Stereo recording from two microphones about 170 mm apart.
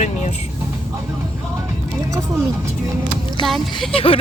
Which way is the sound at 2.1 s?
15° right (ahead or behind).